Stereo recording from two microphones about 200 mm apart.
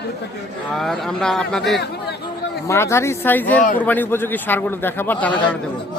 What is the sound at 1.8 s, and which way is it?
Speech, 55° left (ahead or behind).